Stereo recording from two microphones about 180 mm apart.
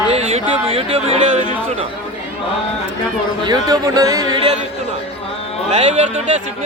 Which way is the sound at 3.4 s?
20° right (ahead or behind).